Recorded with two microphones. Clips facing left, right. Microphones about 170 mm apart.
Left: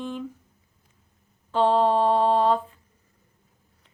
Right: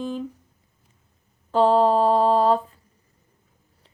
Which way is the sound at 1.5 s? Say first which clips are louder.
Right 3 dB; 40° right (ahead or behind).